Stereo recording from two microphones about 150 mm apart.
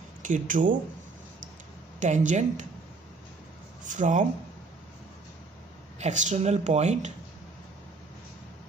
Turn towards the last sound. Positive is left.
turn(degrees=-50)  # may be behind; listen again after turning